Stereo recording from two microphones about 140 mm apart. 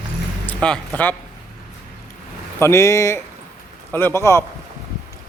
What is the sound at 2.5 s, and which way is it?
A man's voice, 20° left (ahead or behind).